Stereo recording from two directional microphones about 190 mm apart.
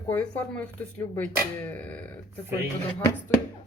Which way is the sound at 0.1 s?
5° left (ahead or behind).